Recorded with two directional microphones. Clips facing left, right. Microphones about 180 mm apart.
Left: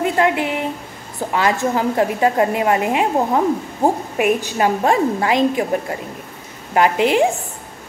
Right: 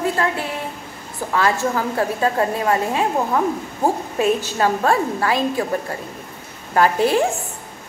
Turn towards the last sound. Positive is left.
turn(degrees=15)  # may be behind; listen again after turning